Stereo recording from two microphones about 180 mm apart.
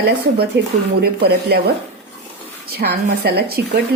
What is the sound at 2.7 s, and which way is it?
A woman's voice, 60° right (ahead or behind).